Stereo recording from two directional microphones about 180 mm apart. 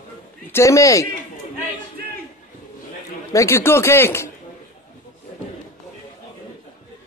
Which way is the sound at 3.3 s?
15° left (ahead or behind).